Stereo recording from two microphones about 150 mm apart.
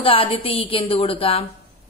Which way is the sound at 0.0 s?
35° left (ahead or behind).